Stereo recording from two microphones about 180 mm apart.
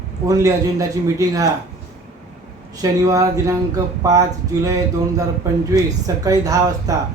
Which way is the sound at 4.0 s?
20° right (ahead or behind).